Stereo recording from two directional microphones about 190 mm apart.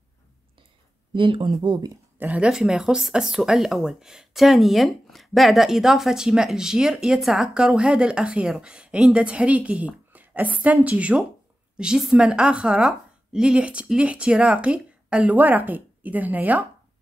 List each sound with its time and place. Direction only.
1.1 s speech: 25° right (ahead or behind)
2.1 s speech: 10° right (ahead or behind)